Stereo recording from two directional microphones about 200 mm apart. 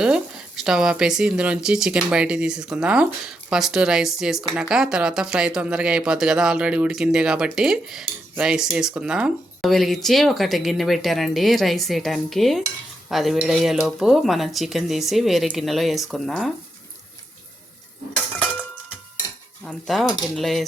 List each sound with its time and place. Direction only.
0.0 s speech: 5° right (ahead or behind)
19.6 s speech: centre (ahead or behind)